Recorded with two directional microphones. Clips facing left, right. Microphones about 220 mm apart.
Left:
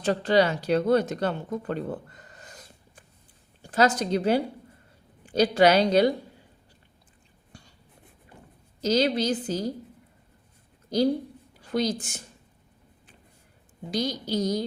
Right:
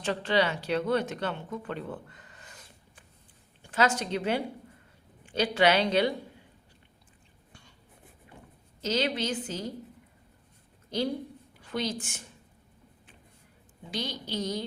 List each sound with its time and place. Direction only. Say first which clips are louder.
0.0 s a woman's voice: left 5 dB; 40° left (ahead or behind)
8.8 s a woman's voice: left 6 dB; 40° left (ahead or behind)
10.8 s a woman's voice: left 7 dB; 40° left (ahead or behind)
13.9 s a woman's voice: left 7 dB; 40° left (ahead or behind)